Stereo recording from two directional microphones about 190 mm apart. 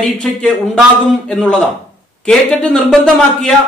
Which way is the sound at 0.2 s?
5° left (ahead or behind).